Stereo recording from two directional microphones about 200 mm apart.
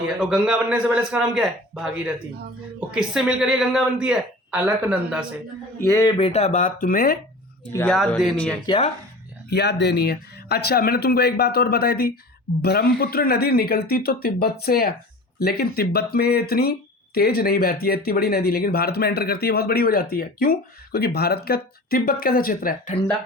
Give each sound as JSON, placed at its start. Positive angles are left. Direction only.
{"t": 0.2, "sound": "speech", "side_deg": -5}
{"t": 2.9, "sound": "speech", "side_deg": -5}
{"t": 5.8, "sound": "speech", "side_deg": 15}
{"t": 7.7, "sound": "speech", "side_deg": 10}
{"t": 7.9, "sound": "speech", "side_deg": 0}
{"t": 8.6, "sound": "speech", "side_deg": 25}
{"t": 9.5, "sound": "speech", "side_deg": 55}